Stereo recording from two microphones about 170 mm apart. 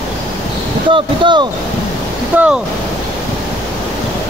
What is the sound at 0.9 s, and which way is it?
Speech, 30° right (ahead or behind).